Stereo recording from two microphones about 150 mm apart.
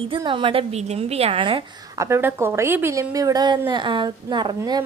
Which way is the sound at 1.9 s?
15° right (ahead or behind).